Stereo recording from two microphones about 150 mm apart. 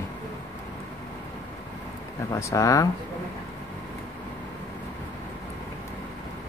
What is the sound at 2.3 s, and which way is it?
Speech, 20° left (ahead or behind).